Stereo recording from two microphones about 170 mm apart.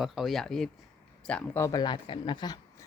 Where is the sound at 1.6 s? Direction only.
25° left (ahead or behind).